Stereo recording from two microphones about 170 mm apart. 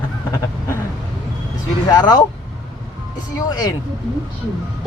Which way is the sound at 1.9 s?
20° left (ahead or behind).